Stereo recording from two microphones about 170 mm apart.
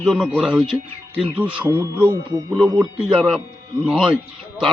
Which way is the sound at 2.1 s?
20° right (ahead or behind).